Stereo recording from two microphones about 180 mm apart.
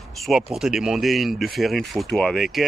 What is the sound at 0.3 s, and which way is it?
Speech, centre (ahead or behind).